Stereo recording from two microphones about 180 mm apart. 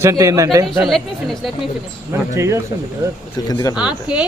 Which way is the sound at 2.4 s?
15° right (ahead or behind).